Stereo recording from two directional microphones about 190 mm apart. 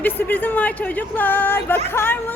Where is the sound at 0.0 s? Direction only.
10° left (ahead or behind).